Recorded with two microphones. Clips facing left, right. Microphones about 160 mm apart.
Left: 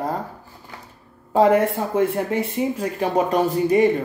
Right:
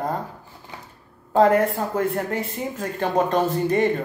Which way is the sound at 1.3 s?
Centre (ahead or behind).